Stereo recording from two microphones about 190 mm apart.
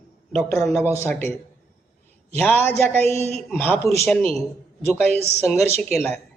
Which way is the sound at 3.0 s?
35° right (ahead or behind).